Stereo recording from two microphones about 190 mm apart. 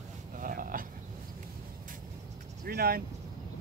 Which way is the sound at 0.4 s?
45° right (ahead or behind).